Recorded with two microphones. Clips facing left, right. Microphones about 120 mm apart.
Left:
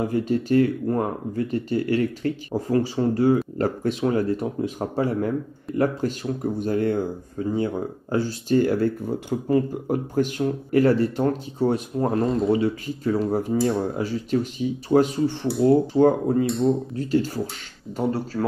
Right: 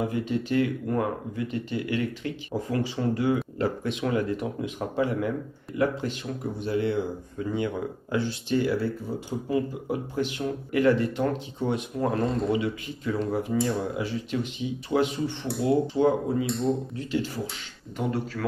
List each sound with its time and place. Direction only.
0.0 s speech: 40° left (ahead or behind)
12.3 s speech: centre (ahead or behind)
12.5 s speech: 40° left (ahead or behind)
13.6 s speech: centre (ahead or behind)
13.8 s speech: 40° left (ahead or behind)
15.4 s speech: centre (ahead or behind)
15.9 s speech: 45° left (ahead or behind)
16.4 s speech: centre (ahead or behind)
16.9 s speech: 40° left (ahead or behind)